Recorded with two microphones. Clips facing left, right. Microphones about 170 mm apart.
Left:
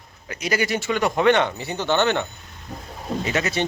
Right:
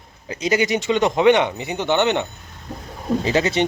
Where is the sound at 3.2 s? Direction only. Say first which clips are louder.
Right 4 dB; 30° right (ahead or behind).